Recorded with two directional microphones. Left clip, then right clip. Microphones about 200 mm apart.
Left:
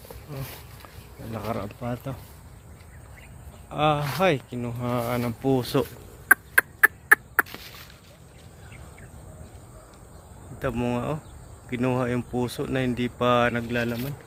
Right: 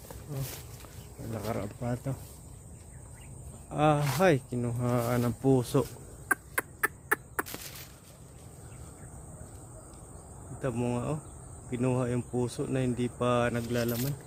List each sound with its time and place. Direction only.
1.5 s speech: 15° right (ahead or behind)
3.7 s speech: 30° right (ahead or behind)
5.8 s a sound: centre (ahead or behind)
10.6 s speech: 5° right (ahead or behind)